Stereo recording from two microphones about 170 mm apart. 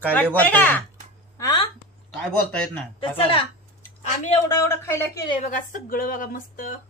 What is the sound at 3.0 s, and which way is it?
Speech, 30° left (ahead or behind).